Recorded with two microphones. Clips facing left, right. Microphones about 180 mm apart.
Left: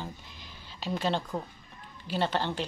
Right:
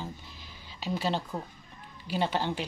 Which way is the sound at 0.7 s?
10° right (ahead or behind).